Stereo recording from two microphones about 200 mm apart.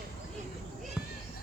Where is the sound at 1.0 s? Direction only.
5° right (ahead or behind).